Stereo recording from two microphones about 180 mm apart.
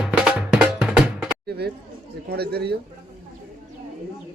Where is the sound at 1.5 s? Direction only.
65° right (ahead or behind).